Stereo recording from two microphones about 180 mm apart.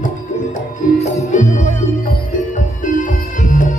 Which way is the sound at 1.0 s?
45° left (ahead or behind).